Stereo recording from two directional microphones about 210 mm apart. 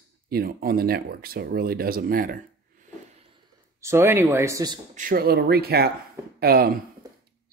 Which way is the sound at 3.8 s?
10° right (ahead or behind).